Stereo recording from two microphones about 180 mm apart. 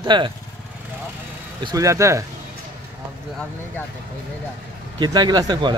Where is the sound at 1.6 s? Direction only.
20° right (ahead or behind).